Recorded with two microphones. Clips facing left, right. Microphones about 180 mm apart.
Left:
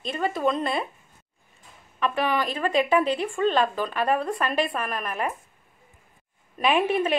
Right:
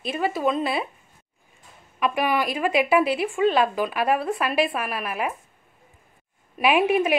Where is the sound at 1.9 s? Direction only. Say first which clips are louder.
Right 2 dB; 10° right (ahead or behind).